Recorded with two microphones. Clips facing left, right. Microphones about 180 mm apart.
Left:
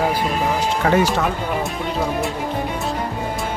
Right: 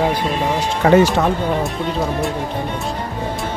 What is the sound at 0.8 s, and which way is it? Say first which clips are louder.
Speech: right 6 dB; 30° right (ahead or behind).